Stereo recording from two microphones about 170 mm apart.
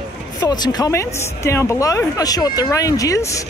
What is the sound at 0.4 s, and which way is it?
Speech, 25° left (ahead or behind).